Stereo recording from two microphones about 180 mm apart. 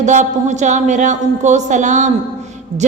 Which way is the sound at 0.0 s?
40° right (ahead or behind).